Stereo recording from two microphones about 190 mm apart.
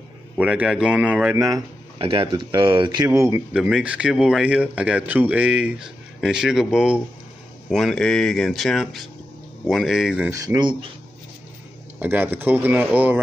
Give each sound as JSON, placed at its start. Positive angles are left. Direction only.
{"t": 0.4, "sound": "speech", "side_deg": -5}
{"t": 2.0, "sound": "speech", "side_deg": -30}
{"t": 3.1, "sound": "speech", "side_deg": -15}
{"t": 10.3, "sound": "speech", "side_deg": -20}
{"t": 12.0, "sound": "speech", "side_deg": -10}